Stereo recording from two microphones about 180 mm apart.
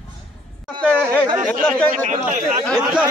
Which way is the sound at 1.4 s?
5° left (ahead or behind).